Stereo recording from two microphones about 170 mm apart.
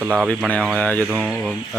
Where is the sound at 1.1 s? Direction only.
10° right (ahead or behind).